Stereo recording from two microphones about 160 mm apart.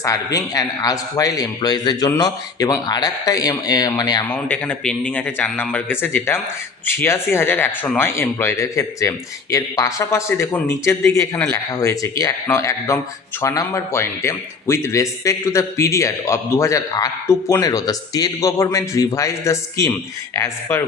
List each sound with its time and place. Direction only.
0.0 s a man's voice: 20° left (ahead or behind)
4.3 s a man's voice: 10° left (ahead or behind)